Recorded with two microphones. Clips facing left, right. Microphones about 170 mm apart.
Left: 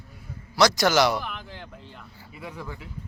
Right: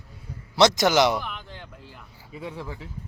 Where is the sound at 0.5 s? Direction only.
25° right (ahead or behind).